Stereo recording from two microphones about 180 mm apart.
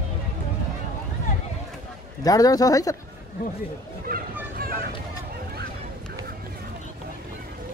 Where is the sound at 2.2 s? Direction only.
20° left (ahead or behind).